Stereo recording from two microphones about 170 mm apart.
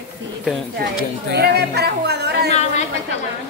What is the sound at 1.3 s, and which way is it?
Speech, 70° right (ahead or behind).